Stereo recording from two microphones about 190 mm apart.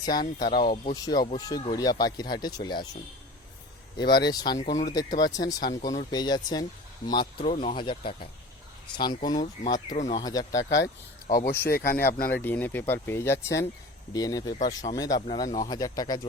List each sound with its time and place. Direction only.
0.0 s speech: 20° left (ahead or behind)
3.9 s speech: 20° left (ahead or behind)
4.5 s speech: 40° left (ahead or behind)
4.9 s speech: 20° left (ahead or behind)
10.6 s speech: 70° left (ahead or behind)
11.3 s speech: 55° left (ahead or behind)
12.4 s speech: 10° left (ahead or behind)